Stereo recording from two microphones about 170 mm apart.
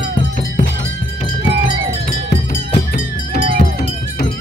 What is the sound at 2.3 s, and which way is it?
Music, 40° left (ahead or behind).